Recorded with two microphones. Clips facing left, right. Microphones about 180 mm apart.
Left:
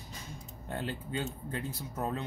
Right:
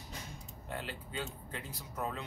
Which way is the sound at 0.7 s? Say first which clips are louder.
Left 6 dB; 40° left (ahead or behind).